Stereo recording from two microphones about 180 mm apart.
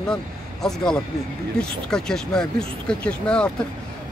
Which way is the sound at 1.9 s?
5° left (ahead or behind).